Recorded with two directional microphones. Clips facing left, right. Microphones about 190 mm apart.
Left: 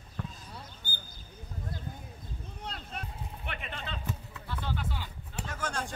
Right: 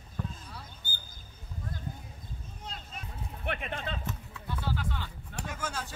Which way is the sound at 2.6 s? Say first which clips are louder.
Left 3 dB; 60° left (ahead or behind).